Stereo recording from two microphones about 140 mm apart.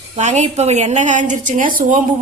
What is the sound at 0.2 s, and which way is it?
A woman's voice, 55° right (ahead or behind).